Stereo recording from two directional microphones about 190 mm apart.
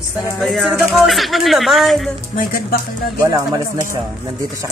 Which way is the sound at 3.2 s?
15° right (ahead or behind).